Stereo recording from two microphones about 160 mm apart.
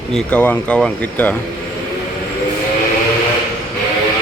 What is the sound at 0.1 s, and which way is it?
Speech, 5° left (ahead or behind).